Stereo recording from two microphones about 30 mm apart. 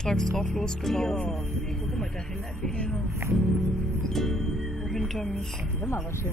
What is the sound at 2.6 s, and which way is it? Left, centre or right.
Speech, left.